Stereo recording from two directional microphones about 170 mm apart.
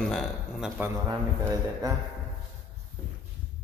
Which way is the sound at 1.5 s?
20° right (ahead or behind).